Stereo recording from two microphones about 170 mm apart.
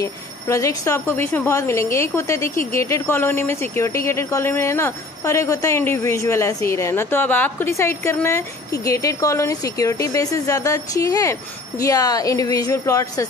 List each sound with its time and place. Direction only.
0.0 s speech: 20° left (ahead or behind)